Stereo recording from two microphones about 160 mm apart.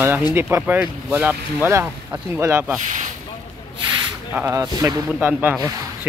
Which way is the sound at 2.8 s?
50° right (ahead or behind).